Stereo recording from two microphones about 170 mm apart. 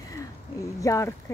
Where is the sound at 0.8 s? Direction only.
20° left (ahead or behind).